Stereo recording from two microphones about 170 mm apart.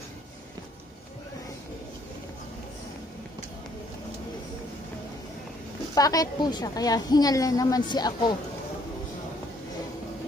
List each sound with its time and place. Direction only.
5.9 s a woman's voice: 20° left (ahead or behind)